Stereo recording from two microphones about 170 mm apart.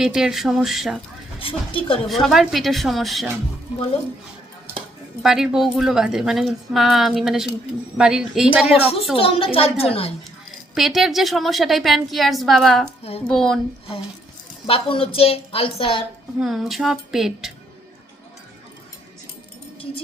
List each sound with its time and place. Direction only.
0.0 s a woman's voice: 5° right (ahead or behind)
1.4 s a woman's voice: 30° left (ahead or behind)
2.0 s a woman's voice: centre (ahead or behind)
5.2 s a woman's voice: 5° right (ahead or behind)
8.7 s a woman's voice: 35° left (ahead or behind)
10.8 s a woman's voice: centre (ahead or behind)
14.7 s a woman's voice: 30° left (ahead or behind)
16.4 s a woman's voice: centre (ahead or behind)